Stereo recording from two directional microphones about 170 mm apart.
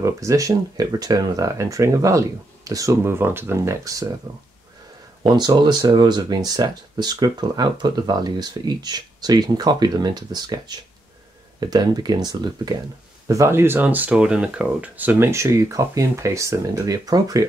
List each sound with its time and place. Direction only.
0.0 s speech: 20° right (ahead or behind)
5.2 s speech: 25° right (ahead or behind)
11.6 s speech: 20° right (ahead or behind)